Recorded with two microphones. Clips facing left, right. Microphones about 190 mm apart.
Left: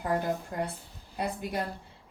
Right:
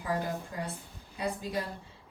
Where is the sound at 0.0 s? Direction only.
60° left (ahead or behind).